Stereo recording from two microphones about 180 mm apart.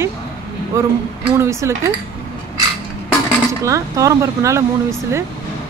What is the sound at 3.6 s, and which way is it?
Speech, 20° right (ahead or behind).